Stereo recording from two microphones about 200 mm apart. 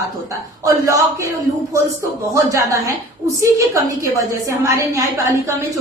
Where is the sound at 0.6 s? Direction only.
15° right (ahead or behind).